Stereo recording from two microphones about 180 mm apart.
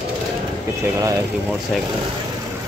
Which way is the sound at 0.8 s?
15° right (ahead or behind).